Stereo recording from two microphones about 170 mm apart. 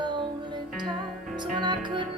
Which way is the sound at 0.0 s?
25° right (ahead or behind).